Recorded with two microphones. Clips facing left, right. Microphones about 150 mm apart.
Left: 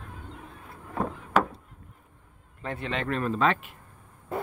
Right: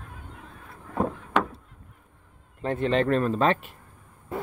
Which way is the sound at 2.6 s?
40° right (ahead or behind).